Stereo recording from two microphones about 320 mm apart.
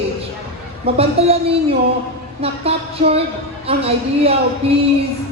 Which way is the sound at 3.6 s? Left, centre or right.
Centre.